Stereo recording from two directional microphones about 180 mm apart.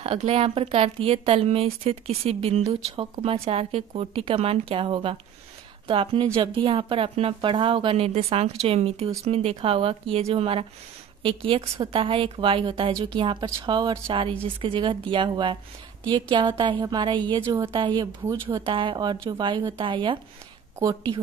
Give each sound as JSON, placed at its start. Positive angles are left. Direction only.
{"t": 0.0, "sound": "a woman's voice", "side_deg": -35}